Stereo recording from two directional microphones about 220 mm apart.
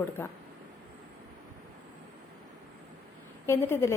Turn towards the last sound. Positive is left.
turn(degrees=10)  # may be behind; listen again after turning